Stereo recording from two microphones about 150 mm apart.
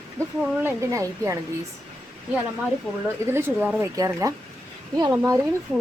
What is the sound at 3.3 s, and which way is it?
Speech, 15° right (ahead or behind).